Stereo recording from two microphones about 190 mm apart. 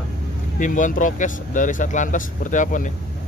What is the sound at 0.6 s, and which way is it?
Speech, 40° left (ahead or behind).